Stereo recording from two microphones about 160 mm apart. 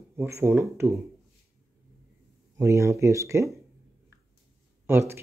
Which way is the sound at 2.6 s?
20° right (ahead or behind).